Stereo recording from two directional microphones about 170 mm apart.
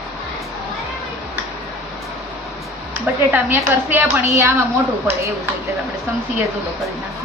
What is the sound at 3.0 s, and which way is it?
A woman's voice, 10° right (ahead or behind).